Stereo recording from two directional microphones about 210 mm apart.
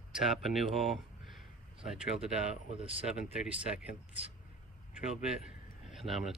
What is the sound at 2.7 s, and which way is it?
Speech, 25° right (ahead or behind).